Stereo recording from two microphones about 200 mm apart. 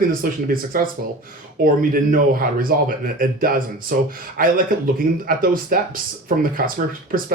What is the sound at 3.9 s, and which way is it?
Speech, 45° right (ahead or behind).